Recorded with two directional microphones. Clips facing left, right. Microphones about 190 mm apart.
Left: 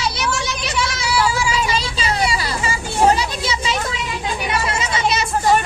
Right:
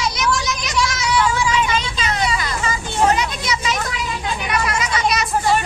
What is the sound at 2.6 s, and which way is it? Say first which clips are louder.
Chatter: left 1 dB; 10° left (ahead or behind).